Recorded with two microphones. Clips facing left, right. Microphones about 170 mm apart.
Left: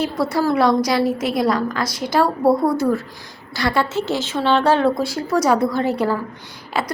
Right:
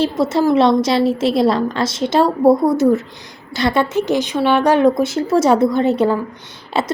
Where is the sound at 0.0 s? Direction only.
25° right (ahead or behind).